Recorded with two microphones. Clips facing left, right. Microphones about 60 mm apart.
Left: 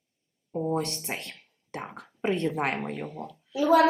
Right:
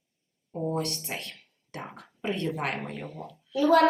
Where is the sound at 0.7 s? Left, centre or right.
Left.